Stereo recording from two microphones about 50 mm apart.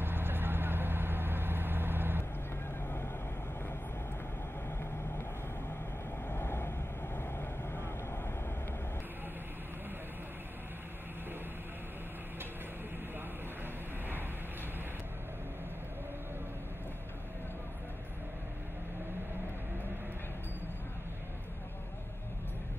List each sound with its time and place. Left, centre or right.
0.0 s vehicle: right
6.2 s vehicle: left